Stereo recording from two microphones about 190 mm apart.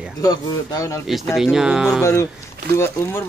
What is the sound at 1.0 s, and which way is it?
Speech, centre (ahead or behind).